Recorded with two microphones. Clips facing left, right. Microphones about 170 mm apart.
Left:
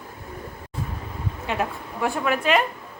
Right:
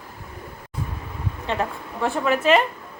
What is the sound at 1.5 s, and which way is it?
A woman's voice, 10° left (ahead or behind).